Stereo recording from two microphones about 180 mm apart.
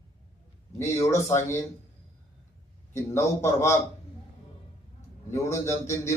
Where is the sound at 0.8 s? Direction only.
15° left (ahead or behind).